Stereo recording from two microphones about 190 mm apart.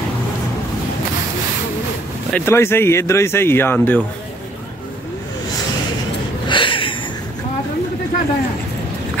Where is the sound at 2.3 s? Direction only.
15° left (ahead or behind).